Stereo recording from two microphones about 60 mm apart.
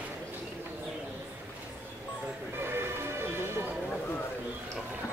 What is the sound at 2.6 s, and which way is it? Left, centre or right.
Music, right.